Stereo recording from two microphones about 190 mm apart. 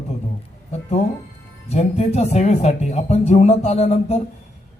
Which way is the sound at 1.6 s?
35° left (ahead or behind).